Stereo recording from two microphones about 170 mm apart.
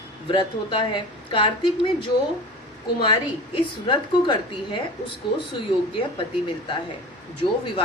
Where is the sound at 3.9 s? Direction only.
30° left (ahead or behind).